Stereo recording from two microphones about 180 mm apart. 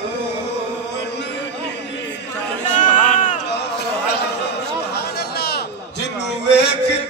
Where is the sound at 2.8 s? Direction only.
45° left (ahead or behind).